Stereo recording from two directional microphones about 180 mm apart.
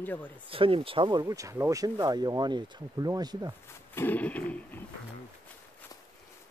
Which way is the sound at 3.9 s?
10° left (ahead or behind).